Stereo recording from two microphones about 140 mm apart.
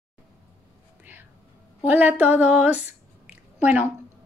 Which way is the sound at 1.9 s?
10° right (ahead or behind).